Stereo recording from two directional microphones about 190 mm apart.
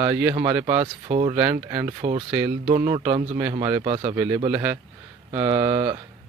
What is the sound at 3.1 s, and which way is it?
Speech, 30° right (ahead or behind).